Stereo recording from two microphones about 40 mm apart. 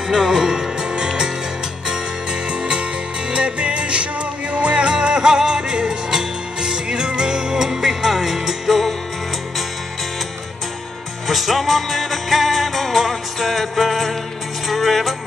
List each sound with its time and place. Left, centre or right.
0.1 s music: centre
2.5 s music: right; by 8.9 s centre
11.2 s music: centre